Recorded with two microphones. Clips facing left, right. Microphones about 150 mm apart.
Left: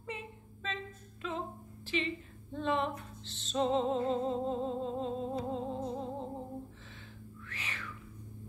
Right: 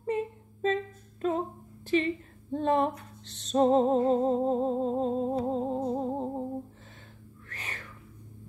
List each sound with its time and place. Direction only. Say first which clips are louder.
0.0 s a sound: right 13 dB; 45° right (ahead or behind)
3.5 s music: right 8 dB; 45° right (ahead or behind)
7.4 s music: right 2 dB; 45° right (ahead or behind)